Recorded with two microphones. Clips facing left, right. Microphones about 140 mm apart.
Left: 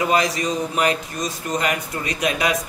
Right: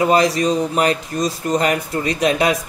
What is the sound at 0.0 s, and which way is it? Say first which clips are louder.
A man's voice: right 5 dB; 35° right (ahead or behind).